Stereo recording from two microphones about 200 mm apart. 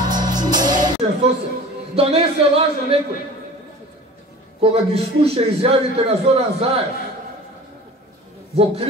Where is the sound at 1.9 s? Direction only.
30° right (ahead or behind).